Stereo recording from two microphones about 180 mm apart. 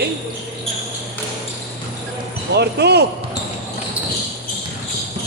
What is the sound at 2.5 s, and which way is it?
Speech, 65° right (ahead or behind).